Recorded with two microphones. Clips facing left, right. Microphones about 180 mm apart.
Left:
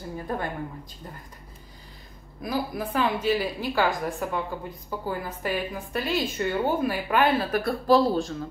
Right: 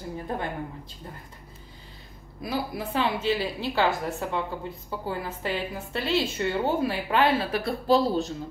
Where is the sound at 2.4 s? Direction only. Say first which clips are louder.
Left 1 dB; 25° right (ahead or behind).